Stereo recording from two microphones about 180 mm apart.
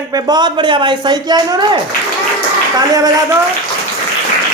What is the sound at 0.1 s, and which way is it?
Speech, 20° right (ahead or behind).